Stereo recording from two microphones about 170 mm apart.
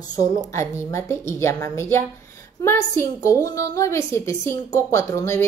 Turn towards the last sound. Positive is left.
turn(degrees=15)  # may be behind; listen again after turning